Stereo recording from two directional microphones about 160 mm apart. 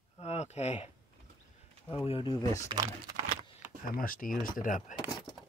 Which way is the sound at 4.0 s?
60° left (ahead or behind).